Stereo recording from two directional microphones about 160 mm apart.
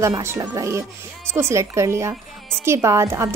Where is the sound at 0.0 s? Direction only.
15° right (ahead or behind).